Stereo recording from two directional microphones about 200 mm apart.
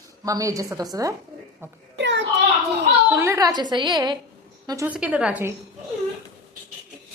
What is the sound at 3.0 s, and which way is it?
A woman's voice, 10° right (ahead or behind).